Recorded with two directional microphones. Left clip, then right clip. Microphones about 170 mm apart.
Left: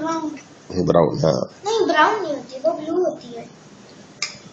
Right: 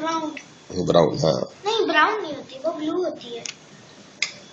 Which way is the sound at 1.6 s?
20° left (ahead or behind).